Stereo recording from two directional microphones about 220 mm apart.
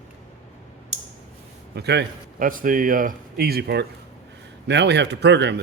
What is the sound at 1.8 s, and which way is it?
A man's voice, 50° right (ahead or behind).